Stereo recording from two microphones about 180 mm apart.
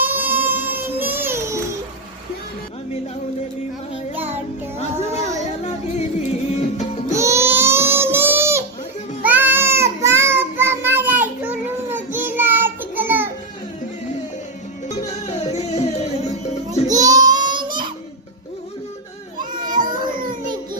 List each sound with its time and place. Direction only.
0.0 s child singing: 10° right (ahead or behind)
4.1 s music: 10° right (ahead or behind)
4.8 s music: 40° left (ahead or behind)
7.1 s baby cry: 15° right (ahead or behind)
9.2 s child singing: 10° right (ahead or behind)
15.3 s music: 35° left (ahead or behind)
17.0 s child singing: 20° right (ahead or behind)
19.8 s baby cry: 25° right (ahead or behind)